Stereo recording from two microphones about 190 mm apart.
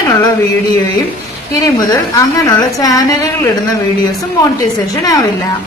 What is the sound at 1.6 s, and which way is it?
A woman's voice, 20° left (ahead or behind).